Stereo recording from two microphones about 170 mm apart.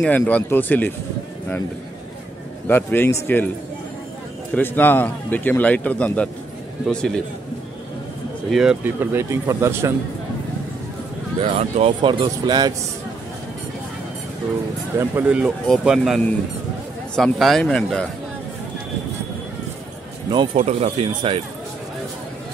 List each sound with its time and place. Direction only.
0.0 s a man's voice: 5° left (ahead or behind)
2.7 s a man's voice: 10° left (ahead or behind)
4.6 s a man's voice: 10° left (ahead or behind)
8.5 s speech: 5° right (ahead or behind)
11.5 s speech: 30° right (ahead or behind)
15.0 s speech: 10° right (ahead or behind)
20.5 s speech: 40° right (ahead or behind)